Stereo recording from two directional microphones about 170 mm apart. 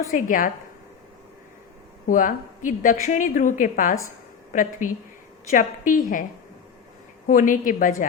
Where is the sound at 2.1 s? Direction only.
50° left (ahead or behind).